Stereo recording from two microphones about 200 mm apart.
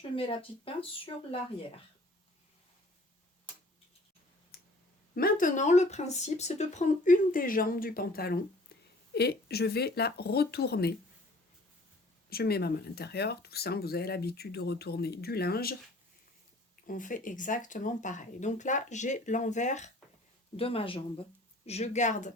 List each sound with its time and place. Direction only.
0.2 s speech: 25° left (ahead or behind)
4.5 s clicking: 50° left (ahead or behind)
5.1 s speech: 45° left (ahead or behind)
12.3 s speech: 50° left (ahead or behind)
16.8 s speech: 40° left (ahead or behind)